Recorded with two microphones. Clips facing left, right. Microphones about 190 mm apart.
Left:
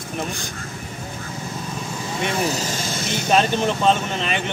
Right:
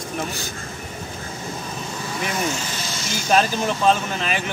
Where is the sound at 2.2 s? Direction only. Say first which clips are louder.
Left 3 dB; 30° left (ahead or behind); by 3.1 s 50° left (ahead or behind).